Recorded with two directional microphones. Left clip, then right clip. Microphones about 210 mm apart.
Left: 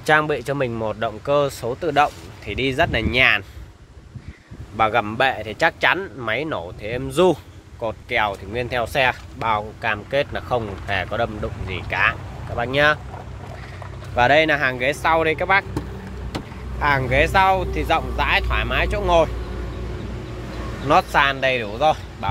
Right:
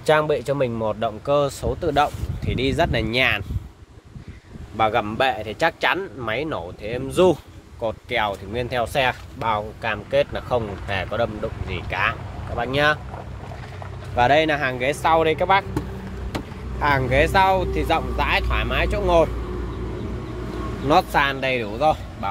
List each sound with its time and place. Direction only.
0.0 s speech: centre (ahead or behind)
4.7 s speech: 5° left (ahead or behind)
14.1 s speech: 5° left (ahead or behind)
16.8 s speech: 5° right (ahead or behind)
20.9 s speech: centre (ahead or behind)